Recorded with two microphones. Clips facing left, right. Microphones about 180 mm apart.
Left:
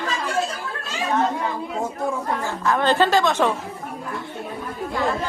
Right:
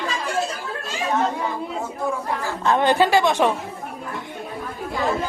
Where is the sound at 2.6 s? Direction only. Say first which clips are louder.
Right 3 dB; 25° right (ahead or behind).